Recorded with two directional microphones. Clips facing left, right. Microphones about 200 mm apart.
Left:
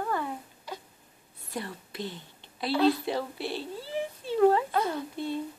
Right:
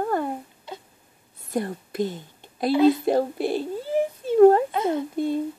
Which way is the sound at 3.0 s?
45° right (ahead or behind).